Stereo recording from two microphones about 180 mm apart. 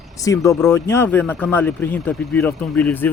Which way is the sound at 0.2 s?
15° left (ahead or behind).